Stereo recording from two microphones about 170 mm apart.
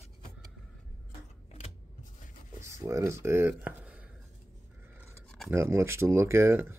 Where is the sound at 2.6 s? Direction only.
15° right (ahead or behind).